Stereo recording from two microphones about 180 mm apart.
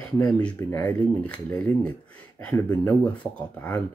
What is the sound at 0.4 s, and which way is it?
Speech, 10° left (ahead or behind).